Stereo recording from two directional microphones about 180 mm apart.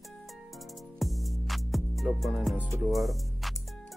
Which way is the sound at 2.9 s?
Centre (ahead or behind).